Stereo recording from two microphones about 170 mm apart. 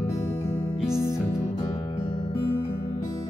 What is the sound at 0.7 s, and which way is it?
Music, 5° right (ahead or behind).